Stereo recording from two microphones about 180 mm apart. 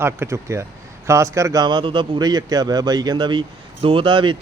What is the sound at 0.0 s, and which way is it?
Speech, 15° right (ahead or behind).